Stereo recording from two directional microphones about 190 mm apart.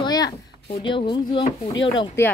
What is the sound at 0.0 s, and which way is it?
Speech, 20° left (ahead or behind).